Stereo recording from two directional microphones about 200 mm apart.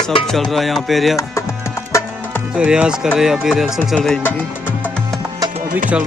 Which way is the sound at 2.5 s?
5° right (ahead or behind).